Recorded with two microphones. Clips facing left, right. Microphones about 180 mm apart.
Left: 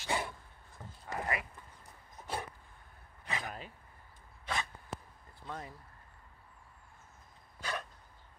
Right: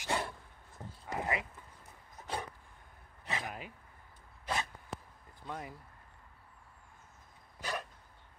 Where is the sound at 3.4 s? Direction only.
15° right (ahead or behind).